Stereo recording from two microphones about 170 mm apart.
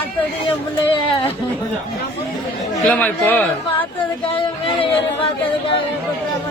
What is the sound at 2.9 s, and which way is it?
Speech, 10° left (ahead or behind).